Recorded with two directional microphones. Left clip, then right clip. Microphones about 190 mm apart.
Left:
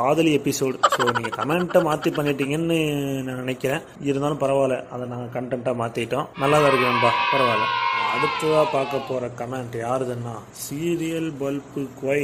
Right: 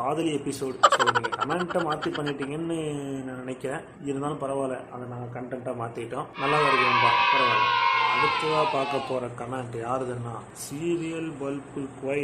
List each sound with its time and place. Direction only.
0.0 s a man's voice: 35° left (ahead or behind)
0.7 s speech: centre (ahead or behind)
3.4 s a man's voice: 40° left (ahead or behind)
6.4 s speech: centre (ahead or behind)
10.8 s speech: 25° left (ahead or behind)